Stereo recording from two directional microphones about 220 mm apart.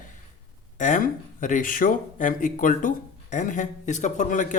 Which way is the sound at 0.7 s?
35° left (ahead or behind).